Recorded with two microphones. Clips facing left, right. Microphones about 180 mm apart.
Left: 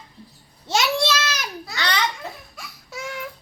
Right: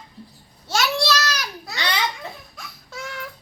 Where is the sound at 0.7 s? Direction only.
20° left (ahead or behind).